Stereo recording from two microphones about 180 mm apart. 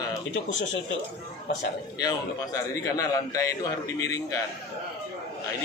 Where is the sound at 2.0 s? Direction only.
20° left (ahead or behind).